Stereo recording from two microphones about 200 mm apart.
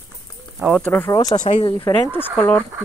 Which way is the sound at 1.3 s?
35° left (ahead or behind).